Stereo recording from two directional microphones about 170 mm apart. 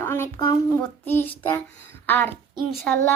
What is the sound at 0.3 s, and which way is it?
Speech, 25° left (ahead or behind).